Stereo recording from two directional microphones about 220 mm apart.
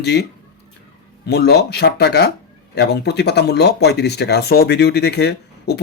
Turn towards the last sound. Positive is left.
turn(degrees=50)  # may be behind; listen again after turning